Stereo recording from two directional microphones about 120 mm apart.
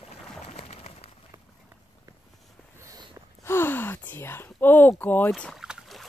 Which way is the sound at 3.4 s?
20° left (ahead or behind).